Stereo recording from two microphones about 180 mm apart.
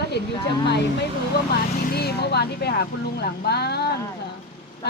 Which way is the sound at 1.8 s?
60° left (ahead or behind).